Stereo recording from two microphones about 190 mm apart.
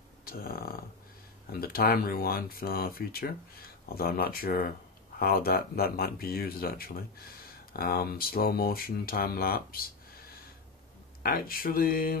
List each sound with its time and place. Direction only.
0.2 s speech: 50° left (ahead or behind)
11.2 s speech: 50° left (ahead or behind)